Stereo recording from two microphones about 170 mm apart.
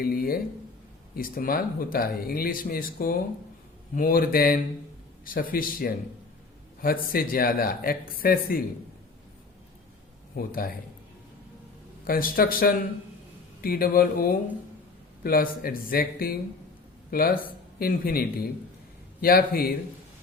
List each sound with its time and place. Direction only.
0.0 s speech: 60° left (ahead or behind)
10.3 s speech: 55° left (ahead or behind)
12.0 s speech: 60° left (ahead or behind)